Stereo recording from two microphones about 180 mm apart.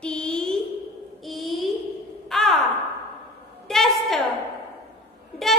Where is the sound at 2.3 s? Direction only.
Centre (ahead or behind).